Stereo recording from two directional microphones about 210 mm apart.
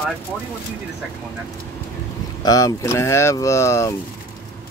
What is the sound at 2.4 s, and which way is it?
Speech, 15° left (ahead or behind).